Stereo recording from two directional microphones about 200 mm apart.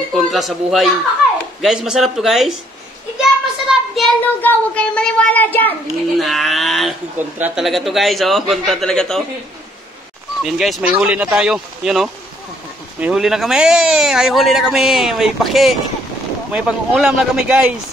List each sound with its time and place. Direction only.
0.1 s a child's voice: centre (ahead or behind)
10.4 s a child's voice: centre (ahead or behind)